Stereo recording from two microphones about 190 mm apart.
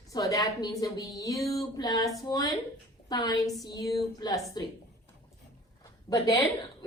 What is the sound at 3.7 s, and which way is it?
A woman's voice, 20° left (ahead or behind).